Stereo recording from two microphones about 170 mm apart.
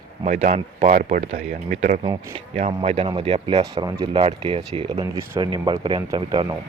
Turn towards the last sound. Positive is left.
turn(degrees=-25)  # may be behind; listen again after turning